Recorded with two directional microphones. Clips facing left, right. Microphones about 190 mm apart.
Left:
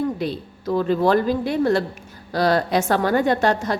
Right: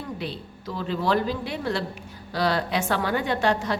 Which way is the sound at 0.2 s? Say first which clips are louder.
Left 7 dB; 45° left (ahead or behind).